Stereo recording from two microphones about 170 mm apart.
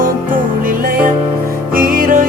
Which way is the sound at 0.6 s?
55° right (ahead or behind).